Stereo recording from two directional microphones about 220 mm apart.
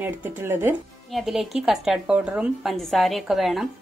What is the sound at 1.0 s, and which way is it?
Speech, centre (ahead or behind).